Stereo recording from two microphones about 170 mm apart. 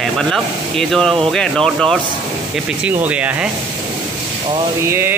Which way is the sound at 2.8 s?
10° right (ahead or behind).